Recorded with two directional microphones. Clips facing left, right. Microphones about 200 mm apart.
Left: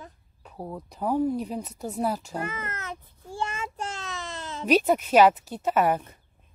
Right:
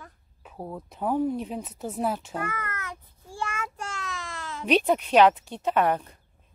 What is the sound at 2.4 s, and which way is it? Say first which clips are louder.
Child singing: even; 20° left (ahead or behind).